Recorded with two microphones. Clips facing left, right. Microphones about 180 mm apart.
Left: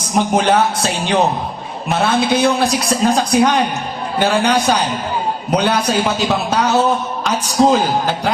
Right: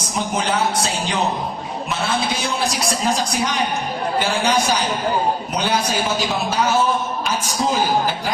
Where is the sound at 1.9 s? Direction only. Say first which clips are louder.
Left 8 dB; 60° left (ahead or behind).